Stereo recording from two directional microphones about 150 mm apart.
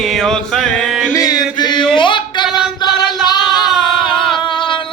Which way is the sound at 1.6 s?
30° left (ahead or behind).